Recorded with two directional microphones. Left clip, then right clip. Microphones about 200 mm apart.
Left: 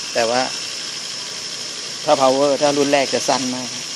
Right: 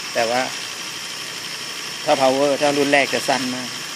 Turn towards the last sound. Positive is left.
turn(degrees=10)  # may be behind; listen again after turning